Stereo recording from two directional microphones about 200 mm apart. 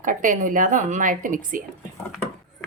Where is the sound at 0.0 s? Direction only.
40° right (ahead or behind).